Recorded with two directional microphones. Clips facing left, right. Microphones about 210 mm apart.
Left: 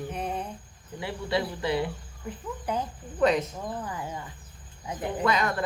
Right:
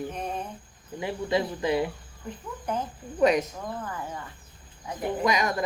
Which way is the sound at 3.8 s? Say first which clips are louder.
Even; 15° left (ahead or behind).